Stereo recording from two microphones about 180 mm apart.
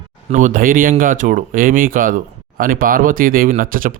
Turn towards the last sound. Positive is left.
turn(degrees=-50)  # may be behind; listen again after turning